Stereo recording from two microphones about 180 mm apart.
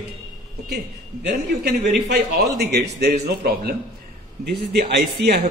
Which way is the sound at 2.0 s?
60° right (ahead or behind).